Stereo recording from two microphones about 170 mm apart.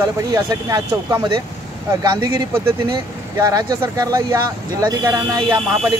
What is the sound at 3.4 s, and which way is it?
Speech, 20° right (ahead or behind).